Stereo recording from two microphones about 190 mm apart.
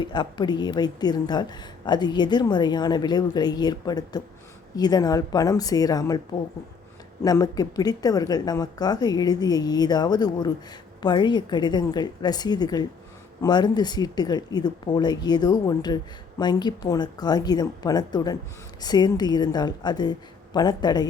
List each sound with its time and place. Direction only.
0.0 s a woman's voice: 25° left (ahead or behind)
7.3 s a woman's voice: 20° left (ahead or behind)